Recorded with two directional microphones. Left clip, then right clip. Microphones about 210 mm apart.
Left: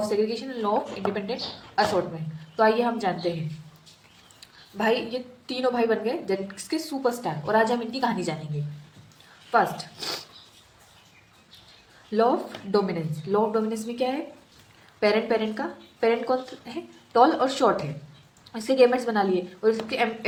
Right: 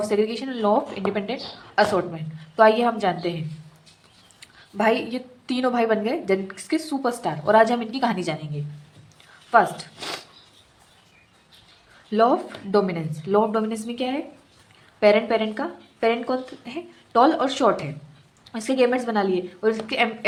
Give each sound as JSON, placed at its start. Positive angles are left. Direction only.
{"t": 0.1, "sound": "a woman's voice", "side_deg": -35}
{"t": 4.4, "sound": "a woman's voice", "side_deg": -35}
{"t": 9.5, "sound": "speech", "side_deg": -30}
{"t": 12.1, "sound": "speech", "side_deg": -25}